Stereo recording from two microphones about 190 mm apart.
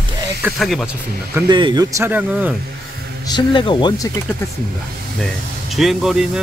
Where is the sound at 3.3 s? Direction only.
25° left (ahead or behind).